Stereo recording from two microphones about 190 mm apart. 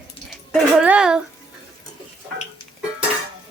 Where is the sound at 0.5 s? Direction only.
5° right (ahead or behind).